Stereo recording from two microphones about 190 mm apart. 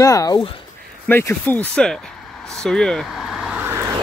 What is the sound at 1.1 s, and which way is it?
Speech, 10° left (ahead or behind).